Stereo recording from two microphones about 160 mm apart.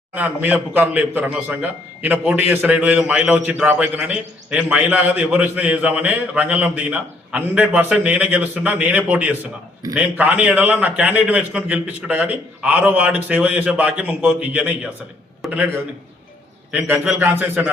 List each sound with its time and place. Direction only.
0.1 s a man's voice: 10° right (ahead or behind)
16.8 s a man's voice: 10° right (ahead or behind)